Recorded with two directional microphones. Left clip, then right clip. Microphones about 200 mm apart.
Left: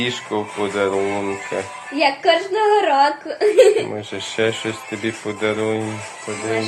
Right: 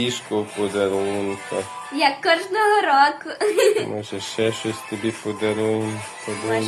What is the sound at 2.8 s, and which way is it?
A woman's voice, 25° right (ahead or behind).